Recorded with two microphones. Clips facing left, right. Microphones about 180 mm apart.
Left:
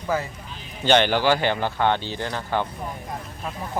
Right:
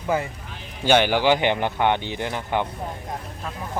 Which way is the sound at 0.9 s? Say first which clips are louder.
Right 1 dB; 10° right (ahead or behind).